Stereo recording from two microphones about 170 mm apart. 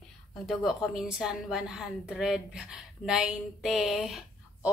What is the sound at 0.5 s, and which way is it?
A woman's voice, centre (ahead or behind).